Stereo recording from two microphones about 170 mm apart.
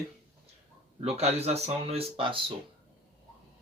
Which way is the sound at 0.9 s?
40° right (ahead or behind).